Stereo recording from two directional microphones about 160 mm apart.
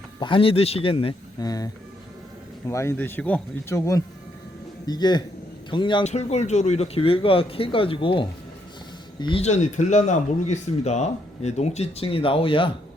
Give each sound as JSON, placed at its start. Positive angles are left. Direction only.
{"t": 0.2, "sound": "speech", "side_deg": 35}
{"t": 1.5, "sound": "speech", "side_deg": 20}
{"t": 6.1, "sound": "speech", "side_deg": 45}